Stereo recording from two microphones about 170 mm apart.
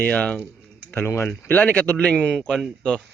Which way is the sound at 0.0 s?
10° left (ahead or behind).